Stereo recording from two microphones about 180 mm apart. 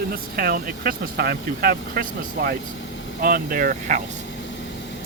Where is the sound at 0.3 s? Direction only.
55° right (ahead or behind).